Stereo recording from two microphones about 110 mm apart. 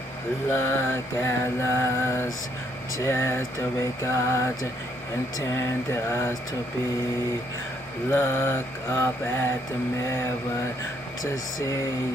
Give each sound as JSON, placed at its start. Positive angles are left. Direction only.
{"t": 0.5, "sound": "mantra", "side_deg": 20}
{"t": 8.1, "sound": "mantra", "side_deg": 25}